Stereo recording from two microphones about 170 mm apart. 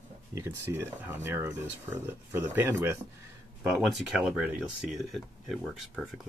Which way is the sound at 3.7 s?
5° right (ahead or behind).